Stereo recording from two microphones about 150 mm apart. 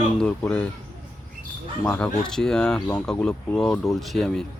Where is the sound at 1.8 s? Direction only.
15° left (ahead or behind).